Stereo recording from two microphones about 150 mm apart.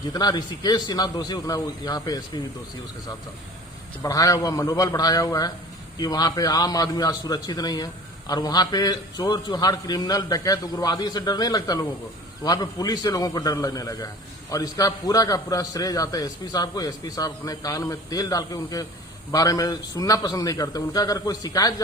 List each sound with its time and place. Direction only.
0.1 s a man's voice: 25° left (ahead or behind)
4.0 s a man's voice: 20° left (ahead or behind)